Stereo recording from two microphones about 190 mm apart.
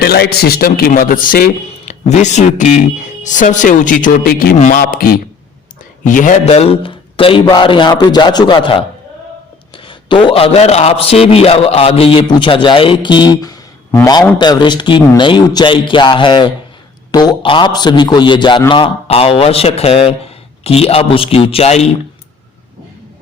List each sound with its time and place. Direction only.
0.0 s a man's voice: 55° left (ahead or behind); by 21.8 s 35° left (ahead or behind)